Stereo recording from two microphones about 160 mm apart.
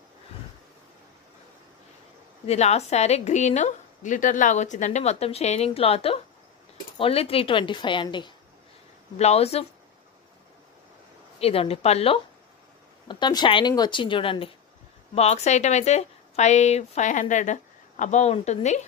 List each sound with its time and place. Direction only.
2.4 s a woman's voice: 40° left (ahead or behind)
9.2 s a woman's voice: 40° left (ahead or behind)
11.3 s a woman's voice: 40° left (ahead or behind)
13.1 s a woman's voice: 25° left (ahead or behind); by 18.9 s 45° left (ahead or behind)